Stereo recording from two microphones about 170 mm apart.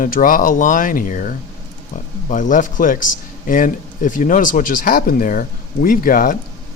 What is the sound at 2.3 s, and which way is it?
Speech, 50° left (ahead or behind).